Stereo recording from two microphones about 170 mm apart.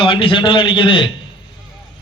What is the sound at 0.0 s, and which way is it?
A man's voice, 30° left (ahead or behind).